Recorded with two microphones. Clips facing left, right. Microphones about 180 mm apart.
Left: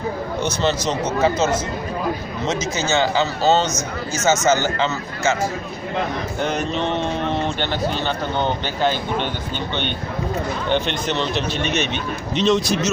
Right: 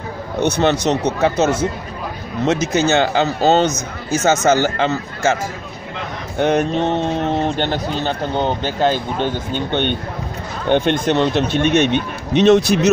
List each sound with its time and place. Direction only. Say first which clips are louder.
0.4 s speech: right 7 dB; 65° right (ahead or behind)
6.4 s a man's voice: right 7 dB; 55° right (ahead or behind)
10.7 s speech: right 8 dB; 50° right (ahead or behind)